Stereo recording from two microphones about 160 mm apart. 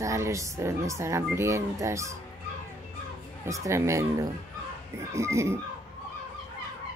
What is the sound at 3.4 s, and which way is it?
Speech, 20° right (ahead or behind).